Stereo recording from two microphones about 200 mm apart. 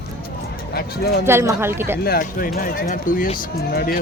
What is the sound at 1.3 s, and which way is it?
Speech, 10° right (ahead or behind).